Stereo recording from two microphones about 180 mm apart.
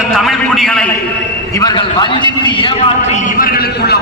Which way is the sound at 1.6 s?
25° left (ahead or behind).